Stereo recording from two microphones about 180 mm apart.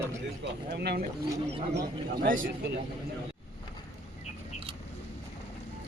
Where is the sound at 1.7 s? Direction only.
55° right (ahead or behind).